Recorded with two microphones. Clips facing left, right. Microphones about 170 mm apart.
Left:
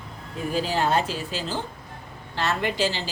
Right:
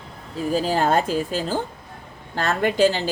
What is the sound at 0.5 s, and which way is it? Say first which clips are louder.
A woman's voice: right 3 dB; 45° right (ahead or behind).